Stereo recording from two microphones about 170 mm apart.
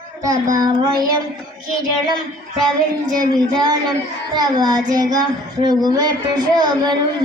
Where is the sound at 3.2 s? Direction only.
25° right (ahead or behind).